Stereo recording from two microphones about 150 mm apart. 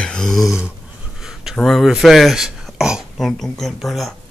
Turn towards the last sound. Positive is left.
turn(degrees=0)  # may be behind; listen again after turning